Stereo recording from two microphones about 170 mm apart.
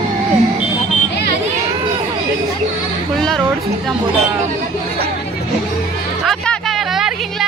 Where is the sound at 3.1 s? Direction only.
Centre (ahead or behind).